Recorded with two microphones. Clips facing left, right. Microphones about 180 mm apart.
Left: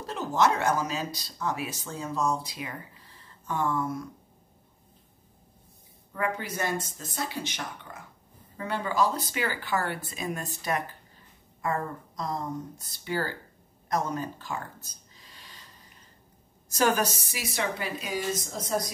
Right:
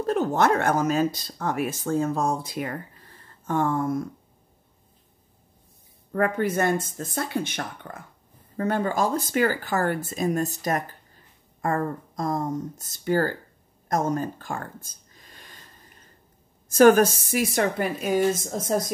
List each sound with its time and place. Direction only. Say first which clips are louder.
0.0 s speech: right 4 dB; 55° right (ahead or behind)
6.1 s speech: right 8 dB; 55° right (ahead or behind)
14.9 s a sound: right 2 dB; 50° right (ahead or behind)
16.7 s speech: right 10 dB; 50° right (ahead or behind)